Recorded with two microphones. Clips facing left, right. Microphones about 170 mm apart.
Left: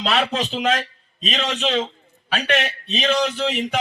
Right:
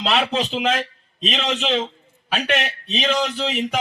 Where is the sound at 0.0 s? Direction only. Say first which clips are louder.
Right 1 dB; 5° right (ahead or behind).